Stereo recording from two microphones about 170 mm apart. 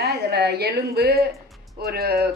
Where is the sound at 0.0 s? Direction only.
70° right (ahead or behind).